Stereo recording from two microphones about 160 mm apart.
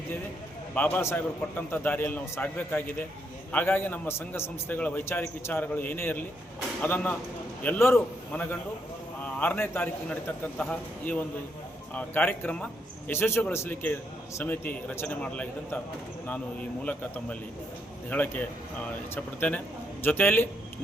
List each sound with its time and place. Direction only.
0.7 s a man's voice: 10° left (ahead or behind)
16.8 s a man's voice: 10° left (ahead or behind)